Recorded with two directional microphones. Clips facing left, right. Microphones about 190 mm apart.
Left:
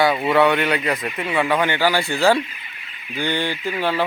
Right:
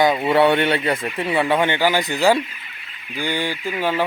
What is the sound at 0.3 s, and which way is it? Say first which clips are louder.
Speech: right 1 dB; 30° right (ahead or behind).